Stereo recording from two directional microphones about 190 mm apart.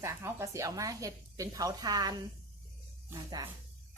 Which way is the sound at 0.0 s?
15° right (ahead or behind).